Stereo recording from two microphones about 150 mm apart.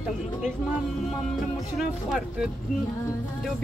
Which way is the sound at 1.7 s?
5° right (ahead or behind).